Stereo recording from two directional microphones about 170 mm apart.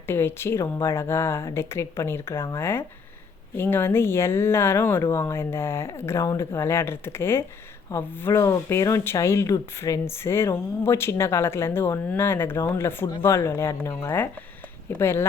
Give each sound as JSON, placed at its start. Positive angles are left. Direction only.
{"t": 0.1, "sound": "speech", "side_deg": 15}